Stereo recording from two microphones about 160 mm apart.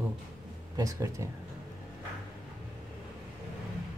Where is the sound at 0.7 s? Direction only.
20° right (ahead or behind).